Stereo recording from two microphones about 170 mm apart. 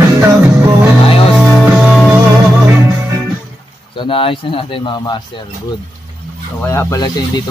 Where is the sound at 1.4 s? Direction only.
10° right (ahead or behind).